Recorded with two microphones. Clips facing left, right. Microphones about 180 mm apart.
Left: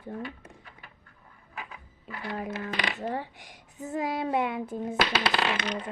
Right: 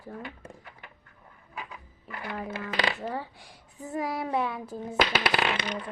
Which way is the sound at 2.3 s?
20° left (ahead or behind).